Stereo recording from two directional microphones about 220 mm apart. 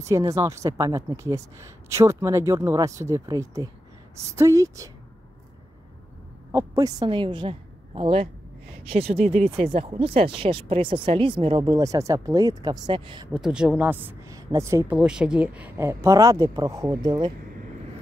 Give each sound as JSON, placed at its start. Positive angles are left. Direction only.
{"t": 0.1, "sound": "speech", "side_deg": -15}
{"t": 6.5, "sound": "a woman's voice", "side_deg": -15}
{"t": 13.3, "sound": "speech", "side_deg": -5}